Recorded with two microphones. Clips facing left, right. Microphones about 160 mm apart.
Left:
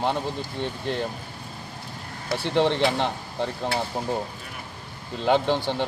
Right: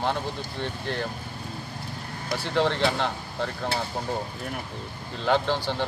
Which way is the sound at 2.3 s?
20° left (ahead or behind).